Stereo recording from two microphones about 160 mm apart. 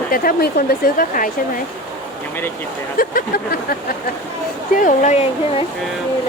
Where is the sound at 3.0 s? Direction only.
65° left (ahead or behind).